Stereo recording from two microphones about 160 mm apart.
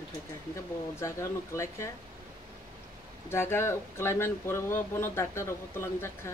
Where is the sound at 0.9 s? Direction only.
20° left (ahead or behind).